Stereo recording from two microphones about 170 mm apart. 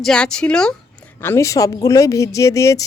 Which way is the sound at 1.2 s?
15° left (ahead or behind).